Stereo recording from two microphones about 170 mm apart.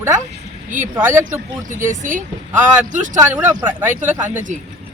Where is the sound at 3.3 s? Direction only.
10° right (ahead or behind).